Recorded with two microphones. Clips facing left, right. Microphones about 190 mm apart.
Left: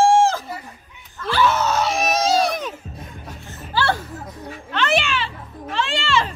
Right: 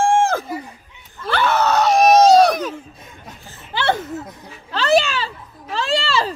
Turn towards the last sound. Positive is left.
turn(degrees=-35)  # may be behind; listen again after turning